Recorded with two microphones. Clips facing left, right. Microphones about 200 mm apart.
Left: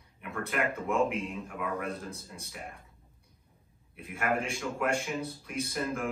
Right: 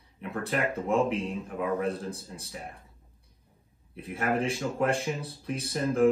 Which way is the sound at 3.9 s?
30° right (ahead or behind).